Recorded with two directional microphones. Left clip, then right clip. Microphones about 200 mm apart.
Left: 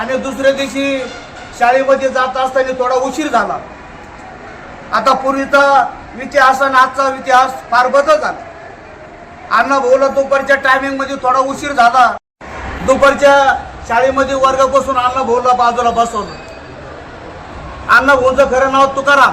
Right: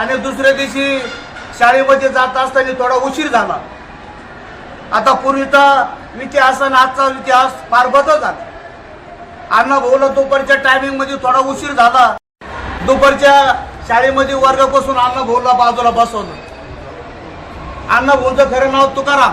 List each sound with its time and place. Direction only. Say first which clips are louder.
0.1 s a man's voice: left 1 dB; 5° right (ahead or behind)
4.9 s a man's voice: right 1 dB; 5° right (ahead or behind)
9.5 s a man's voice: even; 5° right (ahead or behind)
17.8 s a man's voice: left 2 dB; 5° right (ahead or behind)